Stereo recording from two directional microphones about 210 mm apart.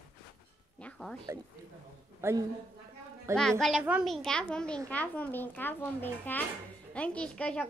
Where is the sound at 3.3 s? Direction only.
5° left (ahead or behind).